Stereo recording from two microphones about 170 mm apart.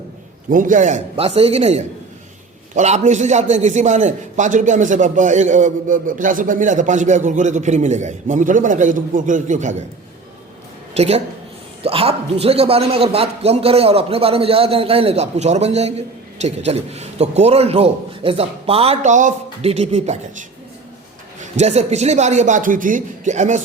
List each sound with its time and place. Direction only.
0.5 s a man's voice: 50° right (ahead or behind)
10.9 s a man's voice: 40° right (ahead or behind)
21.5 s a man's voice: 40° right (ahead or behind)